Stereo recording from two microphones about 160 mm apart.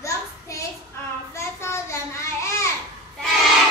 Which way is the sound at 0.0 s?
20° left (ahead or behind).